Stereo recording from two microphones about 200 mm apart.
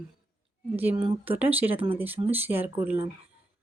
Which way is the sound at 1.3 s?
10° right (ahead or behind).